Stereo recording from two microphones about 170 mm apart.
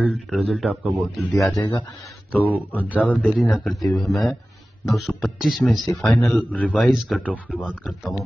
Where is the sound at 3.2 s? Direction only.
5° right (ahead or behind).